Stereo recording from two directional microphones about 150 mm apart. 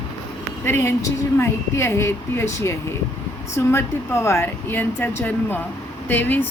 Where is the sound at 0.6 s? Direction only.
15° left (ahead or behind).